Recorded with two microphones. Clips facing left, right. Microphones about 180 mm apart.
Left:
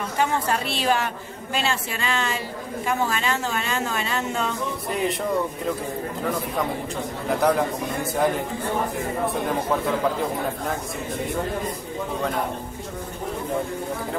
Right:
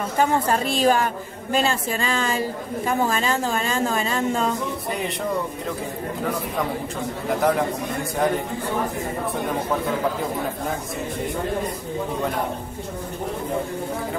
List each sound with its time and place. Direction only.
0.2 s a woman's voice: 45° right (ahead or behind)
7.2 s a man's voice: centre (ahead or behind)